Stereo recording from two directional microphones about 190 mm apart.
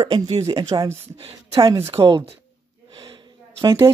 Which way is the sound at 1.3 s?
30° right (ahead or behind).